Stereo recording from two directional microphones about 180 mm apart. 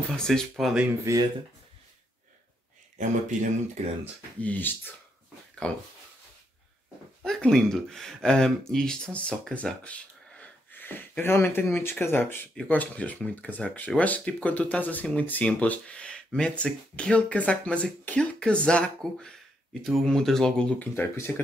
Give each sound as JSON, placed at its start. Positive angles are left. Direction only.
{"t": 0.2, "sound": "speech", "side_deg": 0}
{"t": 3.0, "sound": "speech", "side_deg": -45}
{"t": 4.4, "sound": "speech", "side_deg": 10}
{"t": 7.2, "sound": "speech", "side_deg": 0}